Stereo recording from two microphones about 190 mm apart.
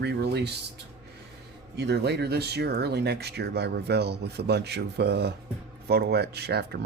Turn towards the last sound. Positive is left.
turn(degrees=-60)  # may be behind; listen again after turning